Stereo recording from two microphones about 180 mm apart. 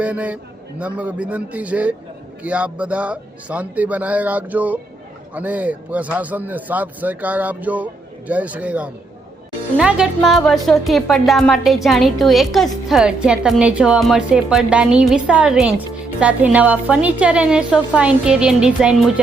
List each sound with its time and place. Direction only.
0.0 s a man's voice: 10° right (ahead or behind)